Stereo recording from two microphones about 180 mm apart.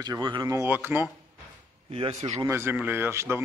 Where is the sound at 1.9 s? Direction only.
35° right (ahead or behind).